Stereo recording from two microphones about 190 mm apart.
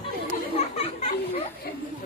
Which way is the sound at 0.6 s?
35° left (ahead or behind).